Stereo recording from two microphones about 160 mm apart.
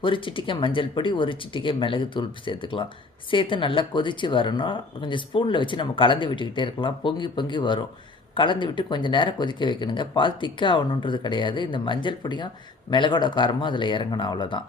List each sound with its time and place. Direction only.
0.0 s speech: 30° left (ahead or behind)